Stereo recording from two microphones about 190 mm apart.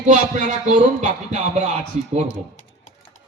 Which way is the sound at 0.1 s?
40° right (ahead or behind).